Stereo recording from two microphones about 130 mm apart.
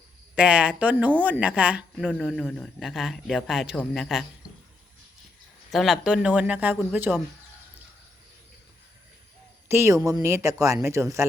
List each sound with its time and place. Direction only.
0.3 s speech: 10° right (ahead or behind)
5.7 s speech: centre (ahead or behind)
9.6 s speech: 20° right (ahead or behind)